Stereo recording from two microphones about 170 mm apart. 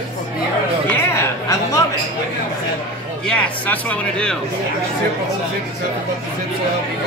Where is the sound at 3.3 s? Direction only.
10° left (ahead or behind).